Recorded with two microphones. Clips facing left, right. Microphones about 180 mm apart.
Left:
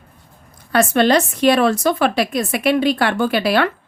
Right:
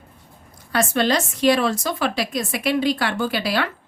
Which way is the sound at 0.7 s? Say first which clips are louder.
Left 6 dB; 60° left (ahead or behind).